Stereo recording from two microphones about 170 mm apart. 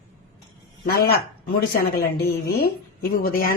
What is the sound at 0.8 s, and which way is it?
A woman's voice, 65° left (ahead or behind).